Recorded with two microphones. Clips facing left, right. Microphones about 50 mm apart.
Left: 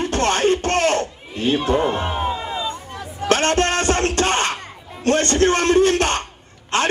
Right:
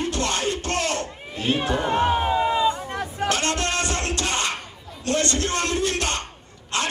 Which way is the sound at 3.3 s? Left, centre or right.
Left.